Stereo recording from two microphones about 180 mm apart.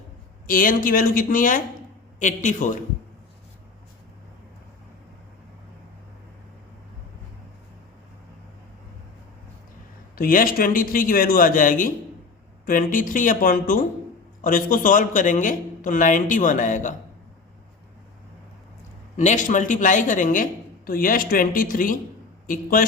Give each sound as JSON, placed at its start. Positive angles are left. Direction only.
{"t": 0.4, "sound": "a woman's voice", "side_deg": 50}
{"t": 10.2, "sound": "a woman's voice", "side_deg": 50}
{"t": 19.1, "sound": "a woman's voice", "side_deg": 45}